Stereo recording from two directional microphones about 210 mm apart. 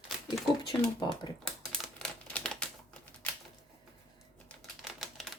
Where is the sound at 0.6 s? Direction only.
20° left (ahead or behind).